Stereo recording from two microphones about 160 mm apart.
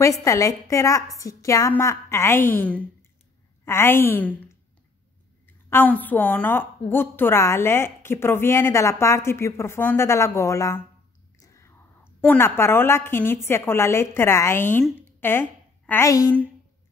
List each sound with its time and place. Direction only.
0.0 s a woman's voice: 20° left (ahead or behind)
5.7 s a woman's voice: 10° left (ahead or behind)